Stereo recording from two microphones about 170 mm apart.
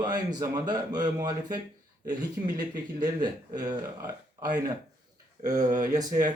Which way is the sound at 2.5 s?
55° right (ahead or behind).